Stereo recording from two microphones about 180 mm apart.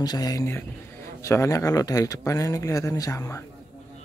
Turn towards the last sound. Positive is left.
turn(degrees=15)  # may be behind; listen again after turning